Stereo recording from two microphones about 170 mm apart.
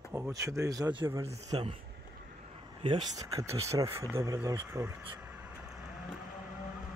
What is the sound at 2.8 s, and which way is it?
Speech, 25° right (ahead or behind).